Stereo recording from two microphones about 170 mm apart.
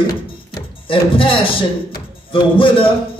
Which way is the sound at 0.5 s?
30° left (ahead or behind).